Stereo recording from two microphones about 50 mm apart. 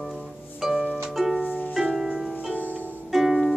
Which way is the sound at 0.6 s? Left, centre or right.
Centre.